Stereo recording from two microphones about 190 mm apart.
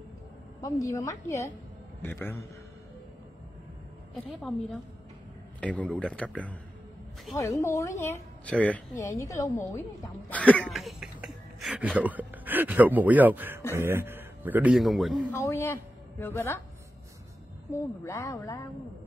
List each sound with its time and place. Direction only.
0.6 s a woman's voice: 15° left (ahead or behind)
4.1 s a woman's voice: centre (ahead or behind)
15.3 s a woman's voice: 15° left (ahead or behind)
18.0 s a woman's voice: 15° left (ahead or behind)